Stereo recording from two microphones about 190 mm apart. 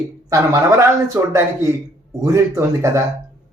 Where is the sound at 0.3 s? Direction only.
15° right (ahead or behind).